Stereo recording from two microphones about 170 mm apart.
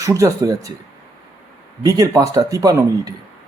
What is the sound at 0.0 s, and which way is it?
Speech, 20° right (ahead or behind).